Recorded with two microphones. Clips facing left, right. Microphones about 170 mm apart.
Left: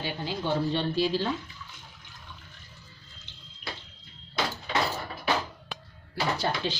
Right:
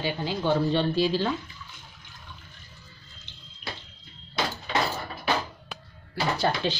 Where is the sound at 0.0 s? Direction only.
90° right.